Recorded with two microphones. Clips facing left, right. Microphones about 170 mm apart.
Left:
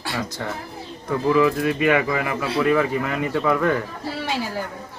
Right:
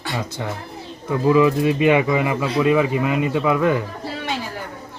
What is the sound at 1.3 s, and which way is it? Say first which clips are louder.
Speech: right 3 dB; 20° right (ahead or behind).